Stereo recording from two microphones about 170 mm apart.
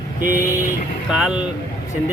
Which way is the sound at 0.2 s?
50° right (ahead or behind).